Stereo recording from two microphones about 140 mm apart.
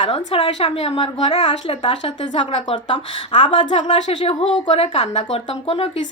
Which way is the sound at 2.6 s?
35° left (ahead or behind).